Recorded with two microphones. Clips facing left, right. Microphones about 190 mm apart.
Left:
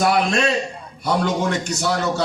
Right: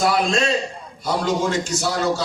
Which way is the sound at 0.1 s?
65° left (ahead or behind).